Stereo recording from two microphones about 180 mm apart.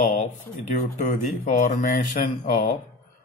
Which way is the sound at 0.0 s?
40° left (ahead or behind).